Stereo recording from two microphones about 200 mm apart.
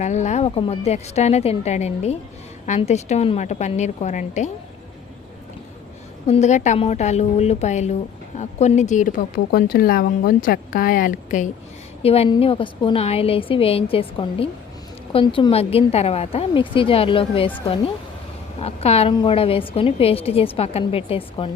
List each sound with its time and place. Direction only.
0.0 s a woman's voice: 35° left (ahead or behind)
6.2 s a woman's voice: 35° left (ahead or behind)
18.6 s a woman's voice: 30° left (ahead or behind)